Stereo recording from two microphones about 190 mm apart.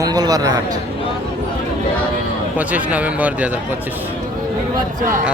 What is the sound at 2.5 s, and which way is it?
Speech, 10° right (ahead or behind).